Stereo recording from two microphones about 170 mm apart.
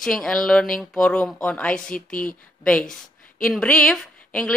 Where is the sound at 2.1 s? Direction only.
55° left (ahead or behind).